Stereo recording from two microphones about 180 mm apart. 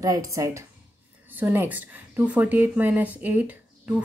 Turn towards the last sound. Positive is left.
turn(degrees=-10)  # may be behind; listen again after turning